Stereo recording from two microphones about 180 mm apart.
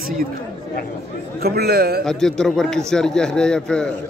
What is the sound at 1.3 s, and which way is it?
Speech, 60° right (ahead or behind).